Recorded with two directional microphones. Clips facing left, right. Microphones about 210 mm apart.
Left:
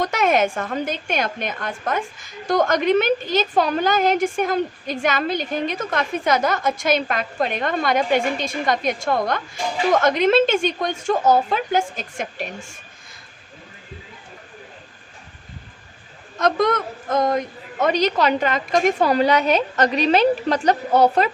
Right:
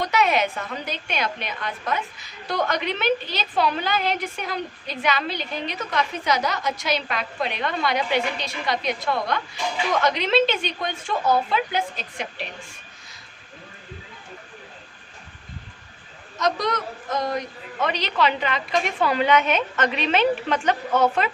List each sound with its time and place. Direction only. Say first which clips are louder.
0.0 s a woman's voice: left 3 dB; 50° left (ahead or behind)
16.4 s a woman's voice: left 5 dB; 55° left (ahead or behind); by 21.2 s 35° left (ahead or behind)